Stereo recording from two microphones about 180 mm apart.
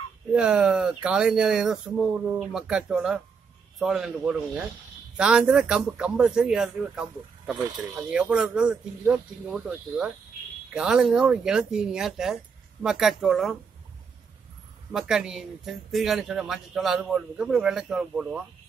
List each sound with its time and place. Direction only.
0.3 s speech: 5° right (ahead or behind)
14.9 s speech: 5° right (ahead or behind)